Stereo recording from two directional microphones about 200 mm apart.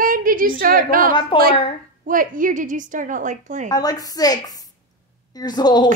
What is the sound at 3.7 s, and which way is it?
A woman's voice, 20° left (ahead or behind).